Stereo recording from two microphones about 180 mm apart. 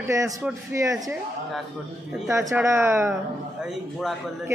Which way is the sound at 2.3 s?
15° right (ahead or behind).